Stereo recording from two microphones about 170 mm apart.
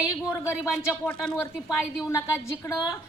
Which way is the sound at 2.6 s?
20° left (ahead or behind).